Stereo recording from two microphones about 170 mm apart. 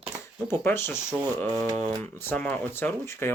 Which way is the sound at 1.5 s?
20° right (ahead or behind).